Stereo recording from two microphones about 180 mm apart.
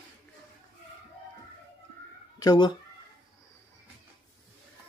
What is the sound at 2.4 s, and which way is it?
Speech, 25° left (ahead or behind).